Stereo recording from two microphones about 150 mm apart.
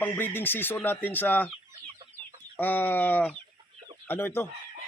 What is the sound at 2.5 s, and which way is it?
Speech, 10° left (ahead or behind).